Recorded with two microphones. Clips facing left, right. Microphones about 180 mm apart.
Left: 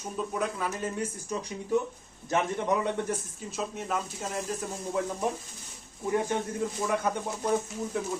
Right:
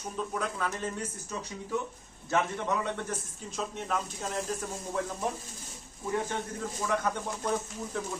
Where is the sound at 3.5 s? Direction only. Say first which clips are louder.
Left 1 dB; 5° left (ahead or behind).